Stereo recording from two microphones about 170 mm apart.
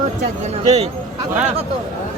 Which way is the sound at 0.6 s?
40° right (ahead or behind).